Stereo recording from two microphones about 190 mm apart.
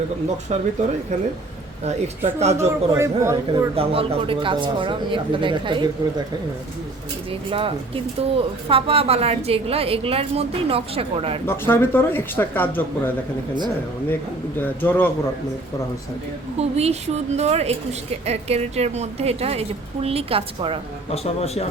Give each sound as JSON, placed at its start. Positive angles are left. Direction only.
{"t": 0.5, "sound": "a woman's voice", "side_deg": -35}
{"t": 1.8, "sound": "a woman's voice", "side_deg": -35}
{"t": 2.6, "sound": "a man's voice", "side_deg": -15}
{"t": 3.8, "sound": "speech", "side_deg": -30}
{"t": 7.3, "sound": "a woman's voice", "side_deg": -30}
{"t": 11.4, "sound": "speech", "side_deg": 10}
{"t": 14.6, "sound": "speech", "side_deg": 10}
{"t": 16.6, "sound": "a woman's voice", "side_deg": -35}
{"t": 21.1, "sound": "a man's voice", "side_deg": 35}